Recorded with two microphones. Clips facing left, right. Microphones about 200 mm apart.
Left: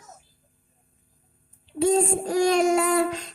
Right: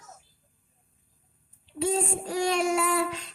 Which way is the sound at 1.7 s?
40° left (ahead or behind).